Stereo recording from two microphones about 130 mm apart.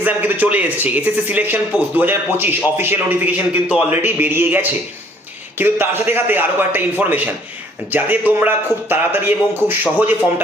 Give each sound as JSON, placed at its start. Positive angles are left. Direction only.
{"t": 0.0, "sound": "speech", "side_deg": -15}